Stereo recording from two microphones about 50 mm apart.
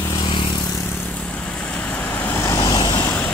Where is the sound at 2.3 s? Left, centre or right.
Left.